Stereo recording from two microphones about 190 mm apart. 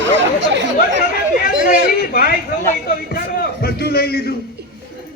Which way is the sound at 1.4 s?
55° left (ahead or behind).